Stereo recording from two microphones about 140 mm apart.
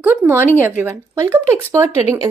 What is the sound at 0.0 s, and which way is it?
Speech, 15° right (ahead or behind).